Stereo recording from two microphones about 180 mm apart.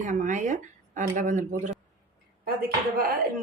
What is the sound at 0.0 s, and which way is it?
Speech, 45° right (ahead or behind).